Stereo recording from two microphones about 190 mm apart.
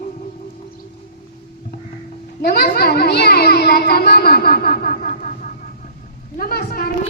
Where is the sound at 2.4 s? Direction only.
55° left (ahead or behind).